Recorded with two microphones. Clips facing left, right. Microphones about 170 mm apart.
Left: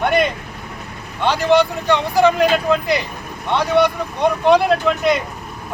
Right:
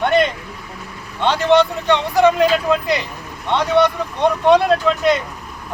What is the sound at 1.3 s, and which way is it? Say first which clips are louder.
Speech: right 1 dB; 20° right (ahead or behind).